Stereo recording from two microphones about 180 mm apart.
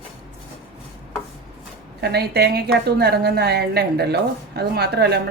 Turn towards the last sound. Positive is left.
turn(degrees=-65)  # may be behind; listen again after turning